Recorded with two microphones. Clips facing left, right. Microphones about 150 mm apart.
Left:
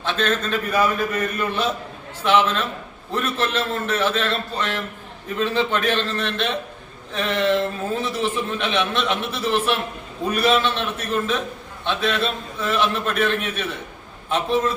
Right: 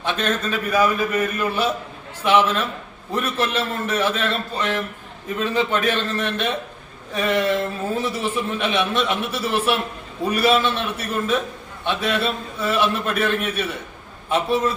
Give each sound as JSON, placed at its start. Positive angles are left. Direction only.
{"t": 0.0, "sound": "a man's voice", "side_deg": -15}